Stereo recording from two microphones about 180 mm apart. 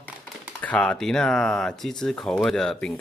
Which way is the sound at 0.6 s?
5° left (ahead or behind).